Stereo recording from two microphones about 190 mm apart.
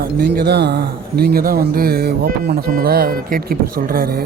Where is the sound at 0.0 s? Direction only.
55° right (ahead or behind).